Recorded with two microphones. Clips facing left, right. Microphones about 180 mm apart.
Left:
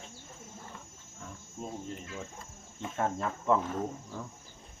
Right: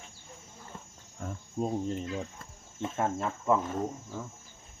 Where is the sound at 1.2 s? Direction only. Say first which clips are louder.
Right 7 dB; 50° right (ahead or behind).